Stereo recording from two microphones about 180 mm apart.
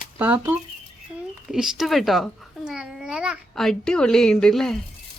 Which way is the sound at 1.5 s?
Centre (ahead or behind).